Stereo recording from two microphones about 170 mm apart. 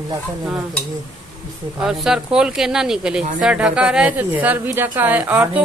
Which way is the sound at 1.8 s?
Centre (ahead or behind).